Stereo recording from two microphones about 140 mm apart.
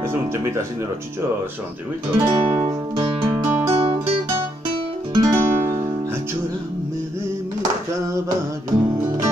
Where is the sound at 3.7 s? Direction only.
40° right (ahead or behind).